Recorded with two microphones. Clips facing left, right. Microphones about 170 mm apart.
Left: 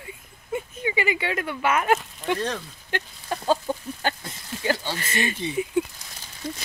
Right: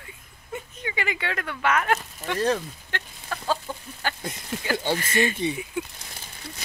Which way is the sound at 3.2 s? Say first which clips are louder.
Left 5 dB; 25° left (ahead or behind).